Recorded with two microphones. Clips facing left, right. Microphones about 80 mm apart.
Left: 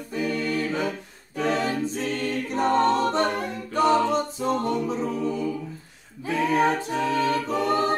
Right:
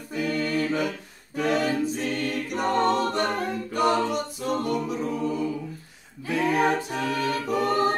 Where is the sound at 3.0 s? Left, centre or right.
Left.